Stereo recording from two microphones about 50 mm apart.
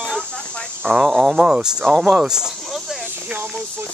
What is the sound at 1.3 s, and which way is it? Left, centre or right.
Speech, centre.